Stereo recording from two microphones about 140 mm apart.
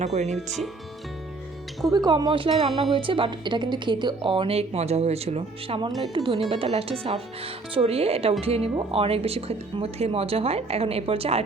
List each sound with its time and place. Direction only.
0.0 s speech: 55° right (ahead or behind)
1.9 s a woman's voice: 30° right (ahead or behind); by 11.4 s 45° right (ahead or behind)